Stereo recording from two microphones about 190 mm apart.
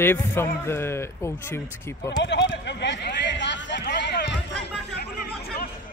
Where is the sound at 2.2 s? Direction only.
65° left (ahead or behind).